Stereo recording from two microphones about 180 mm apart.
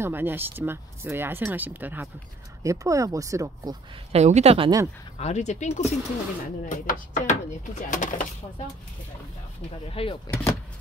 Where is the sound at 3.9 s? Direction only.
35° right (ahead or behind).